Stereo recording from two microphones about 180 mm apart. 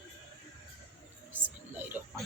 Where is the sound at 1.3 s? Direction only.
10° right (ahead or behind).